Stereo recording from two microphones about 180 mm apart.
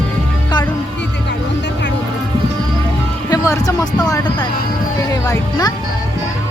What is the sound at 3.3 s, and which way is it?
Music, 20° left (ahead or behind).